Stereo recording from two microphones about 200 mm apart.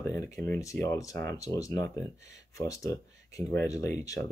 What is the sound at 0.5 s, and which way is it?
Speech, 15° left (ahead or behind).